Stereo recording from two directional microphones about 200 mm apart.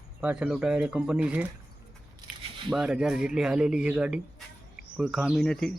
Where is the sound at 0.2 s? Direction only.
5° right (ahead or behind).